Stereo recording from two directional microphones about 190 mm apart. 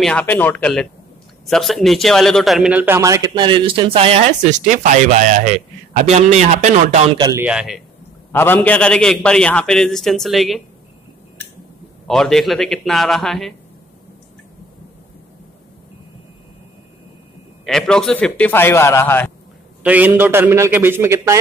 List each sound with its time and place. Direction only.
0.0 s a man's voice: 5° left (ahead or behind); by 7.0 s 40° right (ahead or behind)
7.2 s speech: 20° right (ahead or behind)
7.4 s a man's voice: 5° right (ahead or behind)
8.3 s a man's voice: 10° left (ahead or behind)
12.1 s a man's voice: centre (ahead or behind)
17.6 s a man's voice: 5° left (ahead or behind)
19.8 s a man's voice: 10° right (ahead or behind)